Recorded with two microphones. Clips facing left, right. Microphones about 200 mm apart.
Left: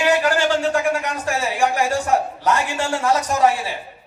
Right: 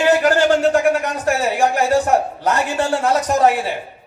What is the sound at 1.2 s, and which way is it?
A man's voice, 65° right (ahead or behind).